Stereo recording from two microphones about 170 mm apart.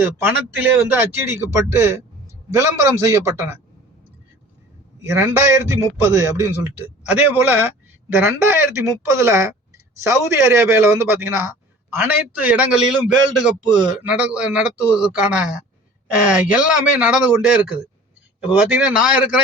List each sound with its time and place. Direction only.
0.0 s a man's voice: 15° right (ahead or behind)
5.0 s a man's voice: 15° right (ahead or behind)
18.7 s speech: 5° right (ahead or behind)